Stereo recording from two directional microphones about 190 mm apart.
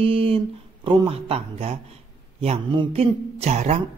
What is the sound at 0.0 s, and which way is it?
Speech, 30° right (ahead or behind).